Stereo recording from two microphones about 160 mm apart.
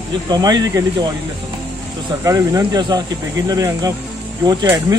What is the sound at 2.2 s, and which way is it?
Speech, 20° right (ahead or behind).